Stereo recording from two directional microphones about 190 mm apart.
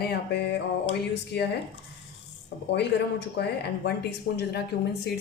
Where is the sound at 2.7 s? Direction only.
65° left (ahead or behind).